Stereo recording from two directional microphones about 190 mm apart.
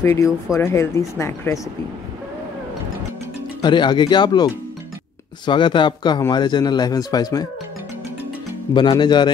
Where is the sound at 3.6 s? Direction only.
25° left (ahead or behind).